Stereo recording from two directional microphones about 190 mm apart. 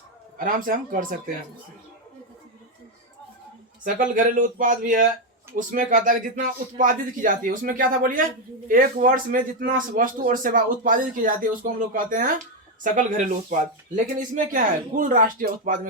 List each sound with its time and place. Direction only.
0.3 s speech: 45° right (ahead or behind)
3.8 s speech: 45° right (ahead or behind)